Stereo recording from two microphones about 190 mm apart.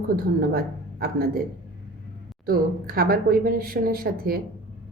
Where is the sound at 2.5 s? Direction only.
50° right (ahead or behind).